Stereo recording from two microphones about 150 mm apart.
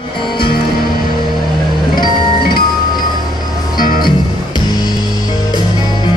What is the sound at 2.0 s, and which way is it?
Music, 90° left.